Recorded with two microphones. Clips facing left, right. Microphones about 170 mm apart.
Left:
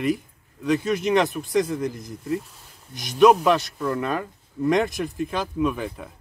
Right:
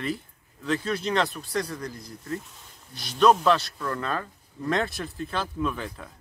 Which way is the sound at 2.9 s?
15° left (ahead or behind).